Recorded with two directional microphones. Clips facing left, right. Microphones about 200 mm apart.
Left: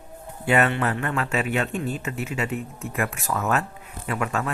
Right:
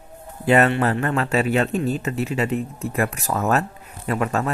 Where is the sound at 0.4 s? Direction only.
35° right (ahead or behind).